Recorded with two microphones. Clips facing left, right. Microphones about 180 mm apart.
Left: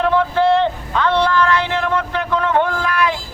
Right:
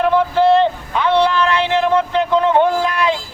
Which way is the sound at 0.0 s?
15° right (ahead or behind).